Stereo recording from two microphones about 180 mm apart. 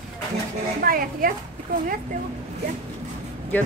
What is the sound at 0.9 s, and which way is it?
Speech, 50° right (ahead or behind).